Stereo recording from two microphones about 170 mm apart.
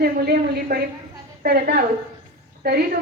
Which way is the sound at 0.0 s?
65° right (ahead or behind).